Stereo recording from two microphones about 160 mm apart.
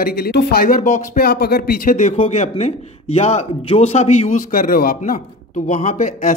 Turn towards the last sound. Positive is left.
turn(degrees=50)  # may be behind; listen again after turning